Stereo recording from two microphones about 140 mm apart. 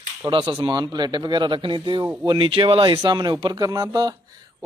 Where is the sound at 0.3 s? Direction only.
35° right (ahead or behind).